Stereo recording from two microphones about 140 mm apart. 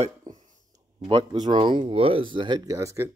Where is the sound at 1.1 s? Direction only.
35° right (ahead or behind).